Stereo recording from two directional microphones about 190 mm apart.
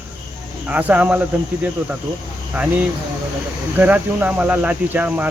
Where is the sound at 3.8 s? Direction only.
10° right (ahead or behind).